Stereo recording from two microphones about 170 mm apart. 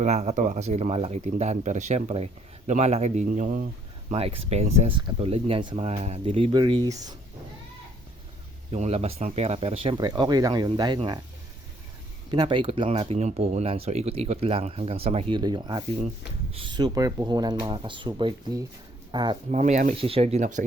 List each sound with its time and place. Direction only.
0.0 s speech: 40° right (ahead or behind)
4.1 s speech: 35° right (ahead or behind)
8.7 s speech: 40° right (ahead or behind)
12.3 s speech: 30° right (ahead or behind)
15.4 s speech: 25° right (ahead or behind)
19.5 s speech: 40° right (ahead or behind)